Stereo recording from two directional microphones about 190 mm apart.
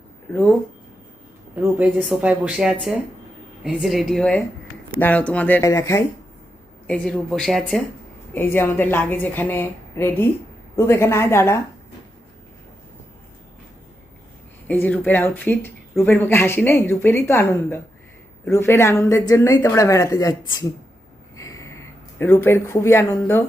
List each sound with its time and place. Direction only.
2.0 s speech: 5° right (ahead or behind); by 6.1 s 15° left (ahead or behind)
6.8 s speech: 5° left (ahead or behind)
14.7 s speech: 10° left (ahead or behind)
21.3 s a sound: 15° left (ahead or behind)